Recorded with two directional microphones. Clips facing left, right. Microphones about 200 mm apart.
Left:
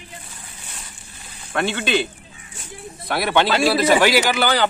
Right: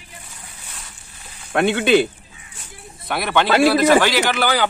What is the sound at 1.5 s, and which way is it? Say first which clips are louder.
Speech: right 6 dB; 55° right (ahead or behind).